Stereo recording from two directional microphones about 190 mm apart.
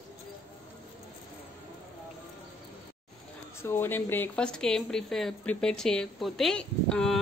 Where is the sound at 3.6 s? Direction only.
10° left (ahead or behind).